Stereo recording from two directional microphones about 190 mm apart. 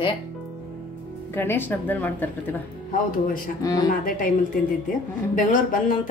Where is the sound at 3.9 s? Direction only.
45° left (ahead or behind).